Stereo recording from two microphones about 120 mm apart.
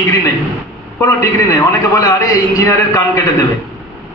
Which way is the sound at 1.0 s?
30° left (ahead or behind).